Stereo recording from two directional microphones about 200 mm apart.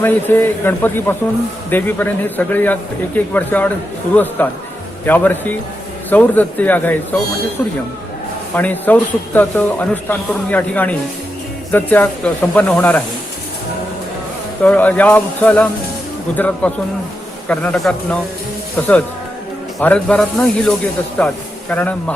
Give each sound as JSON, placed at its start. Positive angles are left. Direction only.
{"t": 0.0, "sound": "a man's voice", "side_deg": 10}
{"t": 14.6, "sound": "a man's voice", "side_deg": 5}
{"t": 19.8, "sound": "a man's voice", "side_deg": 5}